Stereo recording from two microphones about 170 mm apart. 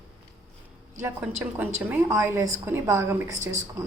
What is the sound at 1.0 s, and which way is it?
A woman's voice, 10° right (ahead or behind).